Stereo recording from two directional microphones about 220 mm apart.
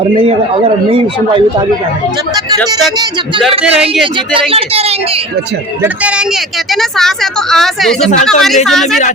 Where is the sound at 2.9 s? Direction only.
20° right (ahead or behind).